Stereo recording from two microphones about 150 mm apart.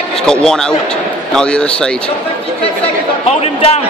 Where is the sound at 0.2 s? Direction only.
5° left (ahead or behind).